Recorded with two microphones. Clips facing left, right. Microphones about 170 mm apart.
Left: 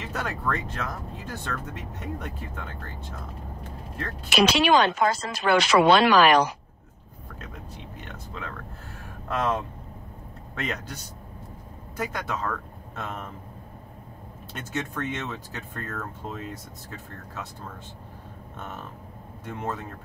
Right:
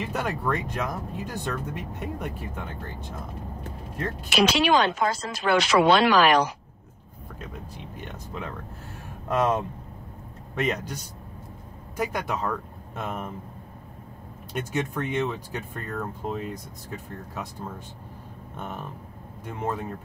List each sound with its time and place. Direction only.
0.0 s speech: 15° right (ahead or behind)
4.6 s speech: 65° left (ahead or behind)
8.0 s speech: 15° right (ahead or behind)
10.6 s speech: 15° right (ahead or behind)
12.0 s speech: 15° right (ahead or behind)
14.5 s speech: 15° right (ahead or behind)
18.6 s speech: 15° right (ahead or behind)